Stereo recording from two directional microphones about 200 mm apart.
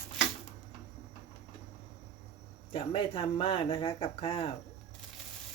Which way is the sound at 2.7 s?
25° left (ahead or behind).